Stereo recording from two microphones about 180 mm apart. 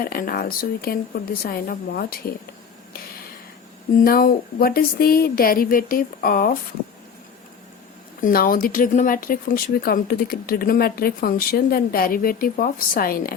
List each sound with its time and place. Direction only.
0.0 s speech: 55° left (ahead or behind)
4.0 s speech: 55° left (ahead or behind)
8.2 s speech: 55° left (ahead or behind)